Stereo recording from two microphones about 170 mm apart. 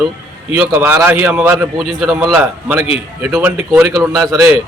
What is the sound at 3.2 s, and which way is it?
A man's voice, 10° right (ahead or behind).